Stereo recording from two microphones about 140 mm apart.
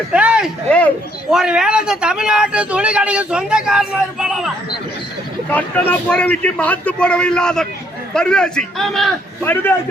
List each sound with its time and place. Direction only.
0.1 s speech: 5° right (ahead or behind)
5.5 s a man's voice: 10° left (ahead or behind)
9.4 s a man's voice: 15° left (ahead or behind)